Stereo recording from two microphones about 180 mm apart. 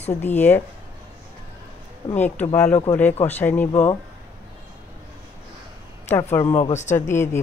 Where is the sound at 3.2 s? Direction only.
10° left (ahead or behind).